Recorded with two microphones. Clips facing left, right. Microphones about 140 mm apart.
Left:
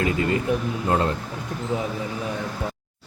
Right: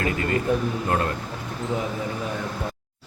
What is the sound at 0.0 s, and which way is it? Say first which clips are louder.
Speech: left 2 dB; 20° left (ahead or behind).